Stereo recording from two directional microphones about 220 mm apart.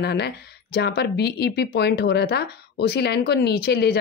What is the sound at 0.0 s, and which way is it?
Speech, 50° left (ahead or behind).